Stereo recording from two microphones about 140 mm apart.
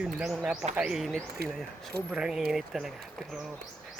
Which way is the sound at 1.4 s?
90° right.